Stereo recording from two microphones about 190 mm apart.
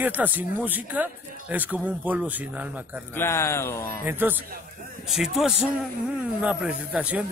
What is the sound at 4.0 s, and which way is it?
A man's voice, 10° right (ahead or behind).